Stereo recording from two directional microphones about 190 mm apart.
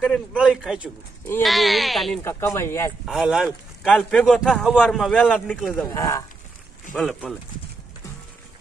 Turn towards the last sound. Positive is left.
turn(degrees=5)  # may be behind; listen again after turning